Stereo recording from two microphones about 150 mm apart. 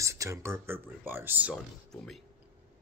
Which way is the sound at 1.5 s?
Centre (ahead or behind).